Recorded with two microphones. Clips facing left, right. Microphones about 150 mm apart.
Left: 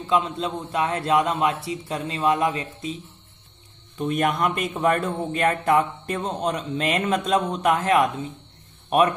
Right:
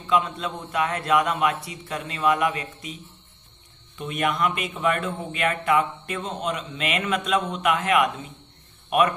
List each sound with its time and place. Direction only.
0.0 s a man's voice: 30° left (ahead or behind)
4.0 s speech: 40° left (ahead or behind)